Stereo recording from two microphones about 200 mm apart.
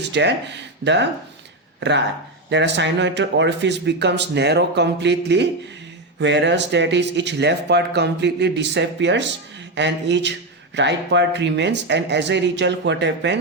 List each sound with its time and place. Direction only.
0.0 s speech: 60° right (ahead or behind)